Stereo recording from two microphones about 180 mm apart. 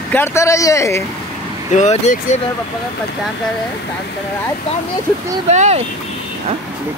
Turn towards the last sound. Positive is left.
turn(degrees=-35)  # may be behind; listen again after turning